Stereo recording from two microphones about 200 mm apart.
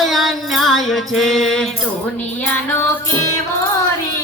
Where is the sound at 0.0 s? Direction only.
Centre (ahead or behind).